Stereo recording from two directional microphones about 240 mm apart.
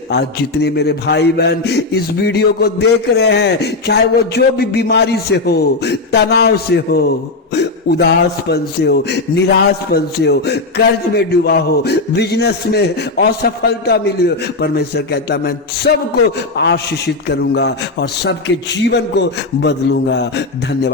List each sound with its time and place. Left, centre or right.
0.1 s a man's voice: left